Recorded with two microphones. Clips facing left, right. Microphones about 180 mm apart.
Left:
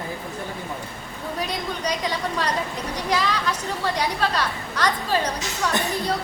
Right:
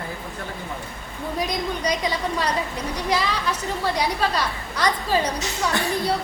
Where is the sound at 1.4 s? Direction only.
10° right (ahead or behind).